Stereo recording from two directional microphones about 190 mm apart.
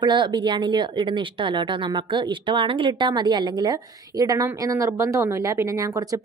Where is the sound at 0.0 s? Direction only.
25° right (ahead or behind).